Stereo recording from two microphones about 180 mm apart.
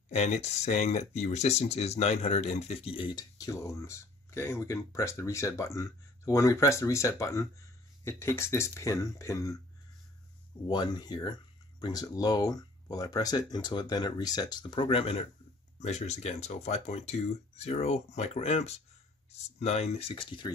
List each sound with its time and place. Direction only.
0.1 s speech: 40° left (ahead or behind); by 9.6 s 15° left (ahead or behind)
10.7 s speech: 25° left (ahead or behind)